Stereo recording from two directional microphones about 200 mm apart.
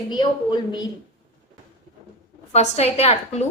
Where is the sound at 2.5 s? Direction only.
35° left (ahead or behind).